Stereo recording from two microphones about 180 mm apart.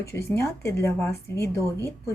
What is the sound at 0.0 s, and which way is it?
A woman's voice, 15° left (ahead or behind).